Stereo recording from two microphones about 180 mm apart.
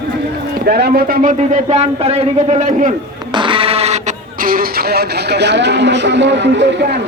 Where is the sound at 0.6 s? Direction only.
60° right (ahead or behind).